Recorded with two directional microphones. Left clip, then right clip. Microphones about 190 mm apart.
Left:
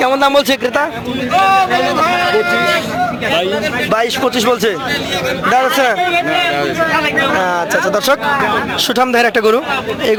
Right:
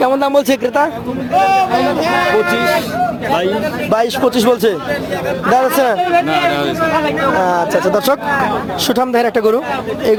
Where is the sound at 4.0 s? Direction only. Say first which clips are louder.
Right 1 dB; 30° right (ahead or behind).